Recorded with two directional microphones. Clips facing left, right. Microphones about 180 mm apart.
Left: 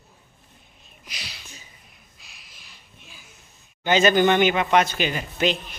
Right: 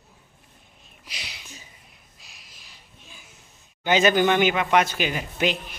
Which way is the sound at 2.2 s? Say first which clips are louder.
Right 1 dB; 40° right (ahead or behind).